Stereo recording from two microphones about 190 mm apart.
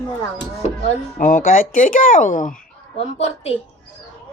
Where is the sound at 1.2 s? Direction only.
45° left (ahead or behind).